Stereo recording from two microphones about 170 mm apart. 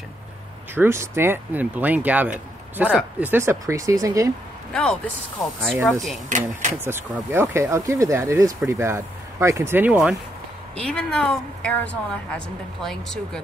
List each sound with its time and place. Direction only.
0.7 s speech: 15° right (ahead or behind)
4.7 s a woman's voice: 5° left (ahead or behind)
6.2 s speech: 45° right (ahead or behind)
6.8 s speech: 15° right (ahead or behind)
10.8 s a woman's voice: 5° left (ahead or behind)